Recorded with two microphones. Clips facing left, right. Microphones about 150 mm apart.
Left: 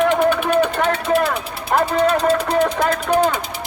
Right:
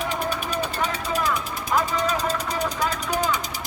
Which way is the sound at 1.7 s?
55° left (ahead or behind).